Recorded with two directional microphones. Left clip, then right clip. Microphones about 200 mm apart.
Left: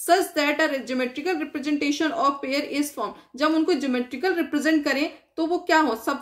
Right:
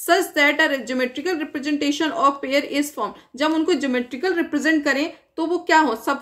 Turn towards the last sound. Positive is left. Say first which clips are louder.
# right 3 dB
turn(degrees=-20)  # may be behind; listen again after turning